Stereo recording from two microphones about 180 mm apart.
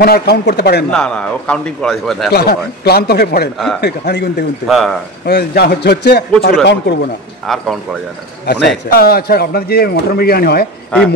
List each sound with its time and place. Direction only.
0.0 s a man's voice: 60° left (ahead or behind)
0.9 s a man's voice: 5° left (ahead or behind)
2.3 s a man's voice: 60° left (ahead or behind)
4.6 s a man's voice: centre (ahead or behind)
5.2 s a man's voice: 60° left (ahead or behind)
7.4 s a man's voice: centre (ahead or behind)
8.5 s a man's voice: 60° left (ahead or behind)